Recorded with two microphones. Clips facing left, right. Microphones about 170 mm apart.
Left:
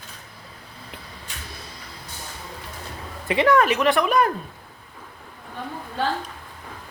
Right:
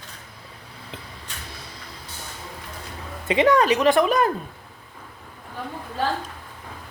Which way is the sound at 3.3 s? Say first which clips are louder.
Right 1 dB; 20° right (ahead or behind).